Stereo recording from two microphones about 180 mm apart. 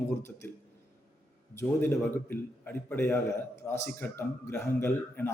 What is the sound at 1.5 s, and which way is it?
A man's voice, 15° left (ahead or behind).